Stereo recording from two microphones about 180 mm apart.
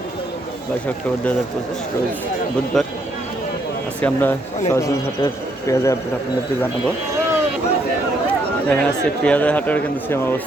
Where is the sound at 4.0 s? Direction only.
10° left (ahead or behind).